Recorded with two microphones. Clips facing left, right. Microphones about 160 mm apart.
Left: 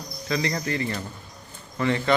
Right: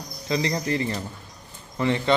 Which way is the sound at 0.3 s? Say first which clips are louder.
Right 2 dB; 25° right (ahead or behind).